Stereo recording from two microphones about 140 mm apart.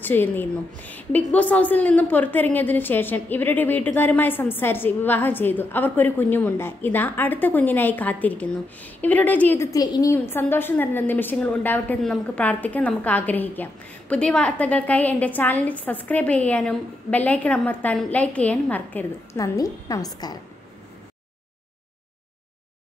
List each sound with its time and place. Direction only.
0.0 s a woman's voice: 15° left (ahead or behind)
19.3 s a woman's voice: 25° left (ahead or behind)